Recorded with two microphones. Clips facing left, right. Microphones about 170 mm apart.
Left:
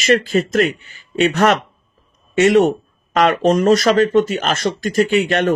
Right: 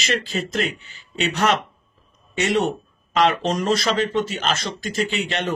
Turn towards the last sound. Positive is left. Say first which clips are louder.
# left 9 dB
turn(degrees=50)  # may be behind; listen again after turning